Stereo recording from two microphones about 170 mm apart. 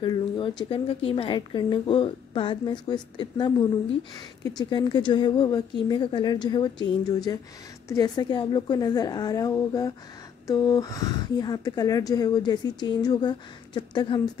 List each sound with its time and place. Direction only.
0.0 s a woman's voice: 25° left (ahead or behind)